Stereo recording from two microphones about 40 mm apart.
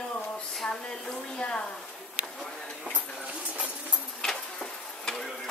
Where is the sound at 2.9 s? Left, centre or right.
Right.